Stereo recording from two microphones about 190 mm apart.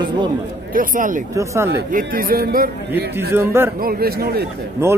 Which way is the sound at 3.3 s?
15° right (ahead or behind).